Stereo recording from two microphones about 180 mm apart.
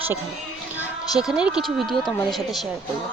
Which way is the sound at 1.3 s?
5° right (ahead or behind).